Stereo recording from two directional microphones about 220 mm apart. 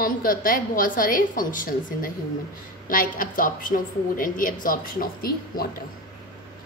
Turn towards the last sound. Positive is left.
turn(degrees=40)  # may be behind; listen again after turning